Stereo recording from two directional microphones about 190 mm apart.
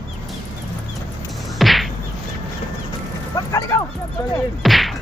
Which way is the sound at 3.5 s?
15° left (ahead or behind).